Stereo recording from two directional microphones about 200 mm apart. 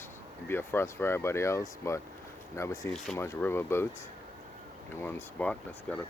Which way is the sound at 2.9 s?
Centre (ahead or behind).